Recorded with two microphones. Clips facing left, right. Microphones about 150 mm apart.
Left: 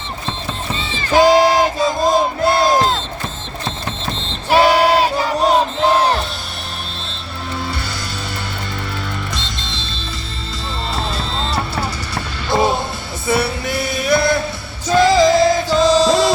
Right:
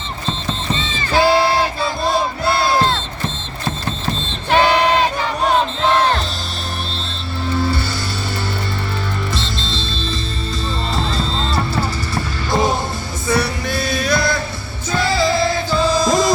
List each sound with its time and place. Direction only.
1.1 s battle cry: 15° left (ahead or behind)
4.5 s a sound: 10° left (ahead or behind)
5.5 s crowd: 10° left (ahead or behind)
11.2 s music: centre (ahead or behind)
13.2 s music: 25° left (ahead or behind)
14.8 s music: 40° left (ahead or behind)
16.0 s music: 75° left (ahead or behind)